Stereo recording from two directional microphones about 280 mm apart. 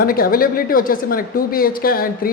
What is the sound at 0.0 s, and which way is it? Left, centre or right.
A woman's voice, left.